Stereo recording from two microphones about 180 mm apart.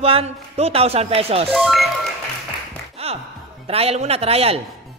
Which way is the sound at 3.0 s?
35° right (ahead or behind).